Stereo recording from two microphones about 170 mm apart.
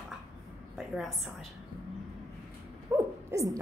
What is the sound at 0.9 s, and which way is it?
Speech, centre (ahead or behind).